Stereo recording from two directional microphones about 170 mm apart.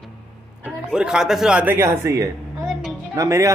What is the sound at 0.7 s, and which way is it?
A man's voice, 5° right (ahead or behind).